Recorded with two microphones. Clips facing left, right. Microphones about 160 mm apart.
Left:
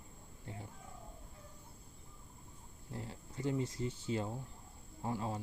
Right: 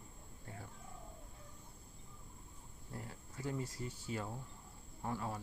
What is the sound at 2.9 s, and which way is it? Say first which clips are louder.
Speech: left 4 dB; 25° left (ahead or behind).